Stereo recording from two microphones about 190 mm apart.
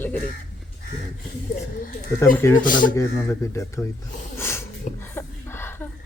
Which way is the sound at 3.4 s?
15° left (ahead or behind).